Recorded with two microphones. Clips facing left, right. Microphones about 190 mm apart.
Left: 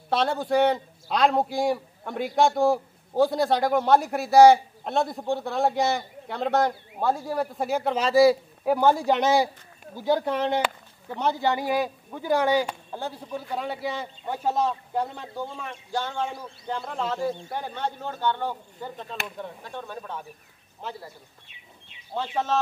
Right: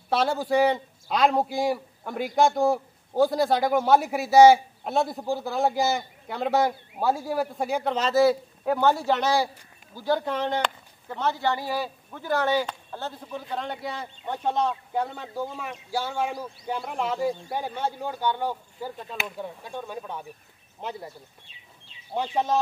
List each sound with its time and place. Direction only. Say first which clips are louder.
0.1 s a man's voice: even; centre (ahead or behind); by 21.0 s 20° right (ahead or behind)
22.1 s speech: right 1 dB; 15° right (ahead or behind)